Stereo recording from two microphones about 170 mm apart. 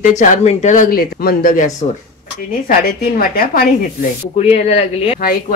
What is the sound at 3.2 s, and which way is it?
Speech, 60° left (ahead or behind).